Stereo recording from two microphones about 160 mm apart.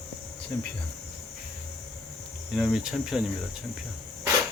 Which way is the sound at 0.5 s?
15° left (ahead or behind).